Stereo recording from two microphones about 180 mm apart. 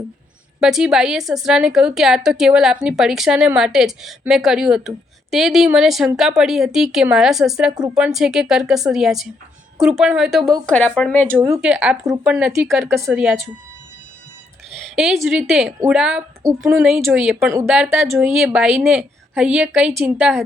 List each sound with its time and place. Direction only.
0.6 s a woman's voice: 5° right (ahead or behind)
11.6 s a woman's voice: 5° right (ahead or behind)
14.7 s a woman's voice: centre (ahead or behind)
16.4 s a woman's voice: 15° right (ahead or behind)